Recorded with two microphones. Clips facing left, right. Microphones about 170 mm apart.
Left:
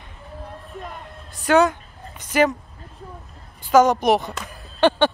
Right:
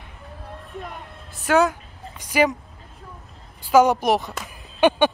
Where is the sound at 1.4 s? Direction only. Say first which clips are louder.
Left 2 dB; 5° right (ahead or behind).